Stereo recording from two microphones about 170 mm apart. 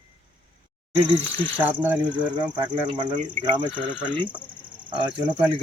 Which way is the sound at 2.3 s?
25° right (ahead or behind).